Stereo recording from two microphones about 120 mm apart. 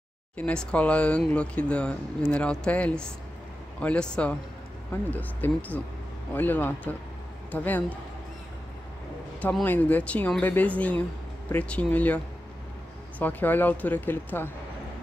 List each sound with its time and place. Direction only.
0.4 s speech: 10° left (ahead or behind)
9.4 s speech: 10° left (ahead or behind)
13.2 s speech: 15° left (ahead or behind)